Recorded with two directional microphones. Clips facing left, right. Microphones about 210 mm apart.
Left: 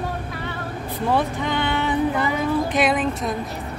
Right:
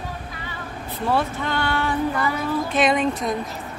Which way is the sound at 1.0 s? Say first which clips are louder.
Left 1 dB; 15° left (ahead or behind).